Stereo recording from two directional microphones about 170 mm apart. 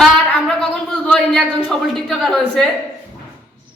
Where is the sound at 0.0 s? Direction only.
Centre (ahead or behind).